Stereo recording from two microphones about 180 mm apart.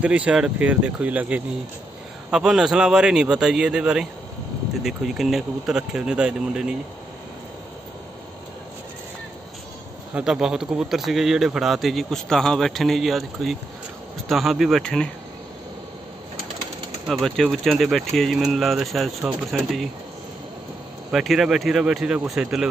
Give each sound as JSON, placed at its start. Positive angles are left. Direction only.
{"t": 0.0, "sound": "speech", "side_deg": -5}
{"t": 10.1, "sound": "speech", "side_deg": -5}
{"t": 17.1, "sound": "speech", "side_deg": 0}
{"t": 21.1, "sound": "speech", "side_deg": 0}